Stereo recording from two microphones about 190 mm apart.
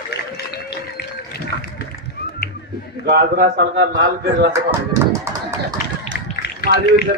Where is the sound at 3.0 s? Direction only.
55° right (ahead or behind).